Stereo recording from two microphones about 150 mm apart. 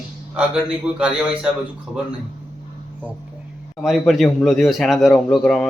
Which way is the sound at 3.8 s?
Centre (ahead or behind).